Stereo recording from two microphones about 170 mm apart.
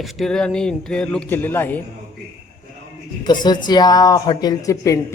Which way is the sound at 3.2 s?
25° left (ahead or behind).